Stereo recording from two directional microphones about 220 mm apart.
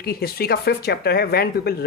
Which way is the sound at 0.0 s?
45° left (ahead or behind).